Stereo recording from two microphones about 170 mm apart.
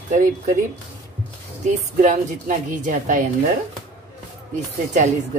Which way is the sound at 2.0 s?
50° right (ahead or behind).